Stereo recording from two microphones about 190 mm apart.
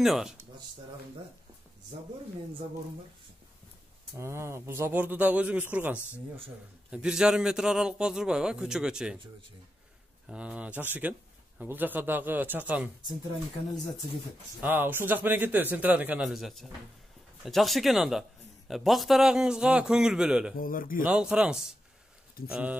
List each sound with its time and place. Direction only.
0.0 s a man's voice: centre (ahead or behind)
4.2 s a man's voice: 15° right (ahead or behind)
10.2 s a man's voice: 5° right (ahead or behind)
14.6 s a man's voice: 10° right (ahead or behind)
20.5 s a man's voice: 50° left (ahead or behind)
21.0 s a man's voice: 5° right (ahead or behind)